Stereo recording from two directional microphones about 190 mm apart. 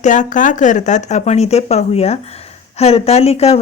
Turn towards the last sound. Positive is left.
turn(degrees=35)  # may be behind; listen again after turning